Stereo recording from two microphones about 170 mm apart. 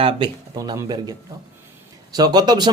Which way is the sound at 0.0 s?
30° right (ahead or behind).